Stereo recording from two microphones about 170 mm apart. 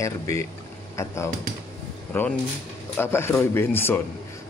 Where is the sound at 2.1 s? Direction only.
10° left (ahead or behind).